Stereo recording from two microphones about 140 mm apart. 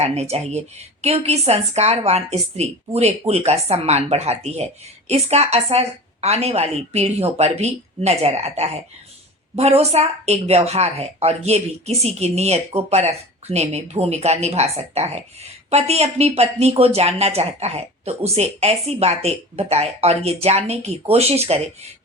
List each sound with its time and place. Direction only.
0.0 s speech: 50° right (ahead or behind)